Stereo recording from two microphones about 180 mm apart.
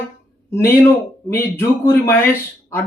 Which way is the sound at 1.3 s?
15° left (ahead or behind).